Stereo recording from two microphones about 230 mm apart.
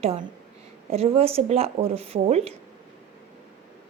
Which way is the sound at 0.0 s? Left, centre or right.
Right.